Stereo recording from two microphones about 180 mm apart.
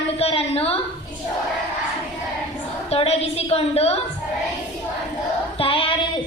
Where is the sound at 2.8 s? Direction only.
35° left (ahead or behind).